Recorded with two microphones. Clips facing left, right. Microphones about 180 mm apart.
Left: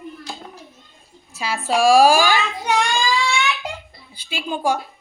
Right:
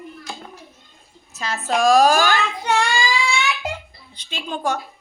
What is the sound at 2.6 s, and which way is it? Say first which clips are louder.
Speech: right 1 dB; centre (ahead or behind).